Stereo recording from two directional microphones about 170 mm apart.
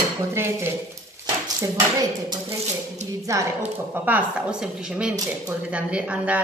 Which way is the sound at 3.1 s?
20° right (ahead or behind).